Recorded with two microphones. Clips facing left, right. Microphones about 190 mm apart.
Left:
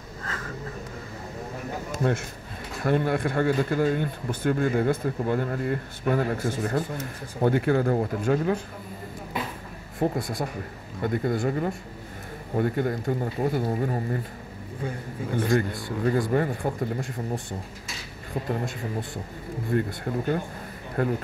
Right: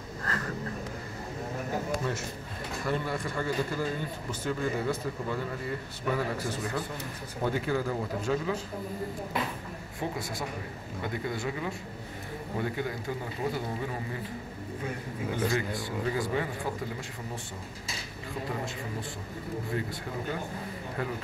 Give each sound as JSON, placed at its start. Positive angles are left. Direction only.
{"t": 0.2, "sound": "a sound", "side_deg": 0}
{"t": 2.8, "sound": "speech", "side_deg": 55}
{"t": 9.9, "sound": "speech", "side_deg": 55}
{"t": 16.1, "sound": "speech", "side_deg": 55}
{"t": 19.7, "sound": "speech", "side_deg": 55}